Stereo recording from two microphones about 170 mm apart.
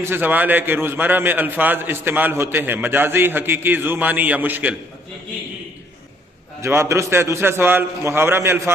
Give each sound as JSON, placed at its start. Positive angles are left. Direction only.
{"t": 0.0, "sound": "a man's voice", "side_deg": -10}
{"t": 6.6, "sound": "a man's voice", "side_deg": -15}